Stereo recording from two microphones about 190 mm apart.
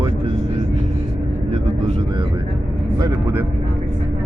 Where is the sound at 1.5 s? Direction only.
35° right (ahead or behind); by 3.4 s 20° right (ahead or behind).